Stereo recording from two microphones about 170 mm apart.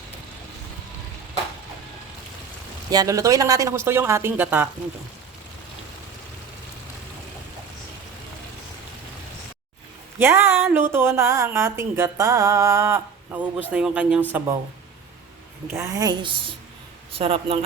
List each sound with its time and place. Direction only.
2.9 s speech: 20° right (ahead or behind)
10.2 s speech: 15° right (ahead or behind)
15.6 s a woman's voice: 15° right (ahead or behind)
17.1 s speech: 35° right (ahead or behind)